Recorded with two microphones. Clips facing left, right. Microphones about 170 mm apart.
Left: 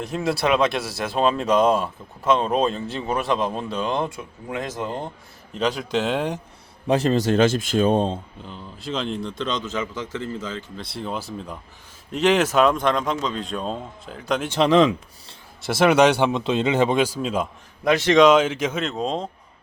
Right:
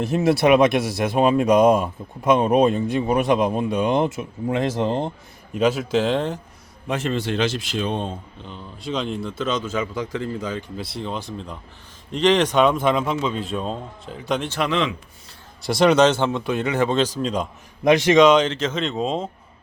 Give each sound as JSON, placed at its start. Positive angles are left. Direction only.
{"t": 0.0, "sound": "speech", "side_deg": -25}
{"t": 5.5, "sound": "speech", "side_deg": -5}
{"t": 6.8, "sound": "speech", "side_deg": 35}
{"t": 8.4, "sound": "a man's voice", "side_deg": 0}
{"t": 10.8, "sound": "speech", "side_deg": 0}
{"t": 14.6, "sound": "a man's voice", "side_deg": 35}
{"t": 15.6, "sound": "speech", "side_deg": 5}
{"t": 17.8, "sound": "a man's voice", "side_deg": -15}
{"t": 18.1, "sound": "speech", "side_deg": 0}